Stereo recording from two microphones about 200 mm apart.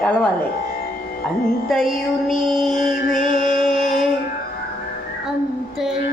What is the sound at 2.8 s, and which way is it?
Music, 40° left (ahead or behind).